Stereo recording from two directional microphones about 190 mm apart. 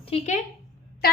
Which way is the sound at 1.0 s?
50° left (ahead or behind).